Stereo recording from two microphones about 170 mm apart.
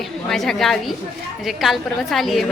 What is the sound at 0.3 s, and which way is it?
A woman's voice, centre (ahead or behind).